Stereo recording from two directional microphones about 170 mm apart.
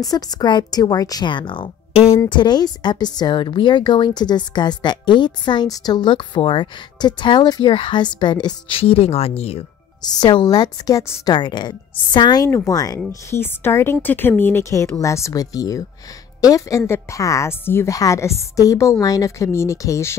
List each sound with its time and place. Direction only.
0.1 s a woman's voice: 25° left (ahead or behind)
10.0 s a woman's voice: 25° left (ahead or behind)